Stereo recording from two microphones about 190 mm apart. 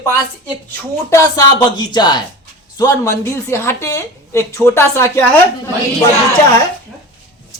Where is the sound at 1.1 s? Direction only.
15° left (ahead or behind).